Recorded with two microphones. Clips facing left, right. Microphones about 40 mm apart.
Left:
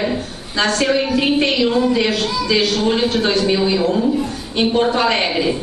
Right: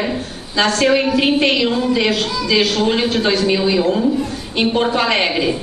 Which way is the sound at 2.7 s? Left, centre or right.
Centre.